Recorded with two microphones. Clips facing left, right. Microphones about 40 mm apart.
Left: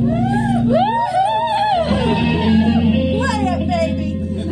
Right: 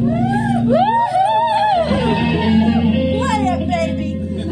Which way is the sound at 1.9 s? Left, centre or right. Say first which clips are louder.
Even; centre.